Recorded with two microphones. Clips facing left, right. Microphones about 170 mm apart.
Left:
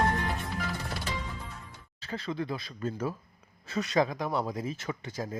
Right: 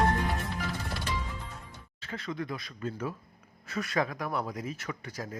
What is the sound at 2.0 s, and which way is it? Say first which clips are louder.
Speech: left 2 dB; 35° left (ahead or behind).